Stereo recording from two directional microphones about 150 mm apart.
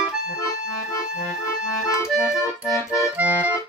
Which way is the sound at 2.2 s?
20° left (ahead or behind).